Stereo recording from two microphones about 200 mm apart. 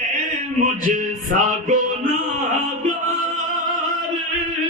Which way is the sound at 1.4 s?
40° right (ahead or behind).